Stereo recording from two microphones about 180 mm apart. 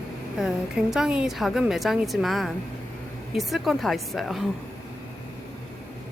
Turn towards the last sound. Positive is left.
turn(degrees=0)  # may be behind; listen again after turning